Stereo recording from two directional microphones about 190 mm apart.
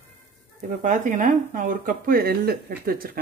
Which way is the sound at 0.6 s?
40° right (ahead or behind).